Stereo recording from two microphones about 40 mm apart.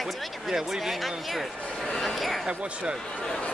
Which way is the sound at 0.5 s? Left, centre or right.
Centre.